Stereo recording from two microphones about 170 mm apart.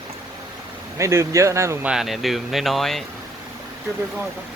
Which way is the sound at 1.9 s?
Centre (ahead or behind).